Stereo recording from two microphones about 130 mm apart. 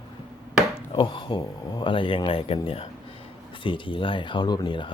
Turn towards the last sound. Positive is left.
turn(degrees=35)  # may be behind; listen again after turning